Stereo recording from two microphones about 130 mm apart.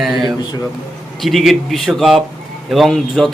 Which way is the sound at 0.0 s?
Centre (ahead or behind).